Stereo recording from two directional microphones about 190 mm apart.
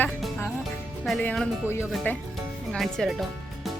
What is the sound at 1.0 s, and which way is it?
Speech, 5° left (ahead or behind).